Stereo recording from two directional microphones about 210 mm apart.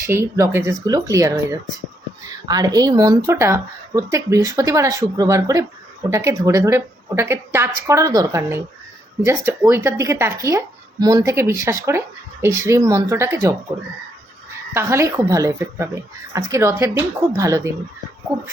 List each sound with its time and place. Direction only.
0.0 s speech: 15° right (ahead or behind)
14.7 s speech: 10° right (ahead or behind)